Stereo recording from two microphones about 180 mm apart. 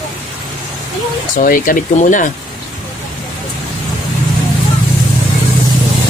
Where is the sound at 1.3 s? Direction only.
50° left (ahead or behind).